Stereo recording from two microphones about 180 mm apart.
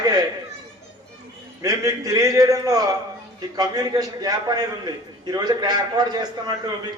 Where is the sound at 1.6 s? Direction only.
20° right (ahead or behind).